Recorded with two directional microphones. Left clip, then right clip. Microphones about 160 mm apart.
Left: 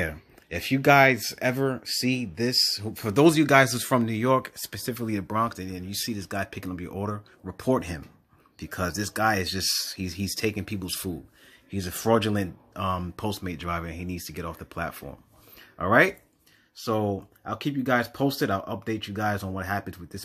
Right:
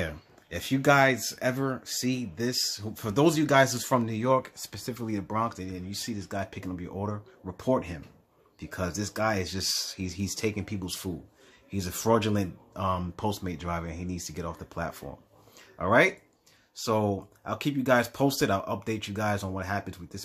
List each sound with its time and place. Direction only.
0.0 s speech: 10° left (ahead or behind)
15.8 s speech: 20° left (ahead or behind)
16.7 s speech: 5° left (ahead or behind)